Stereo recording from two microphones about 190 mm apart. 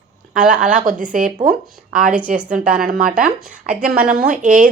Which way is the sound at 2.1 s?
5° right (ahead or behind).